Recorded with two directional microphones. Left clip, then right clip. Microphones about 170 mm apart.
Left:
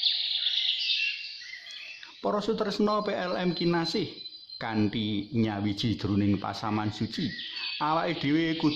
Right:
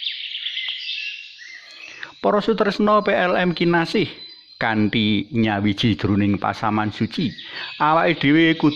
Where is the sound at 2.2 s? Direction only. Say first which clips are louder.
Right 10 dB; 25° right (ahead or behind).